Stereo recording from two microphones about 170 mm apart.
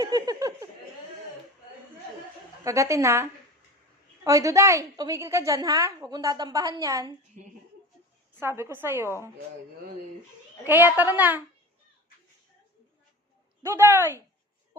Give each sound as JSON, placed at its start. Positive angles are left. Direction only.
{"t": 0.0, "sound": "a sound", "side_deg": -20}
{"t": 2.6, "sound": "a woman's voice", "side_deg": -20}
{"t": 8.4, "sound": "a woman's voice", "side_deg": -15}
{"t": 10.6, "sound": "a woman's voice", "side_deg": -10}
{"t": 13.6, "sound": "a woman's voice", "side_deg": -15}